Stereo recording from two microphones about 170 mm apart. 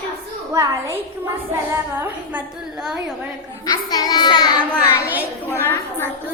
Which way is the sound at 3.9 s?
25° left (ahead or behind).